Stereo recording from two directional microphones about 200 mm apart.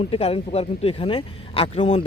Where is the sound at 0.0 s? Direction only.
30° left (ahead or behind).